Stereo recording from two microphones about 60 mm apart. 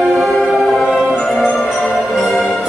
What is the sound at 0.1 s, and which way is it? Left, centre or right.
Music, centre.